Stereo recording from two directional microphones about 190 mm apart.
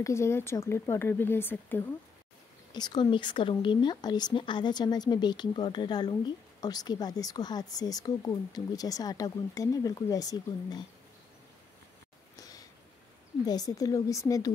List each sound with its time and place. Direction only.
0.0 s speech: 15° left (ahead or behind)
2.7 s speech: 25° left (ahead or behind)
12.4 s a sound: 20° left (ahead or behind)
13.5 s speech: 20° left (ahead or behind)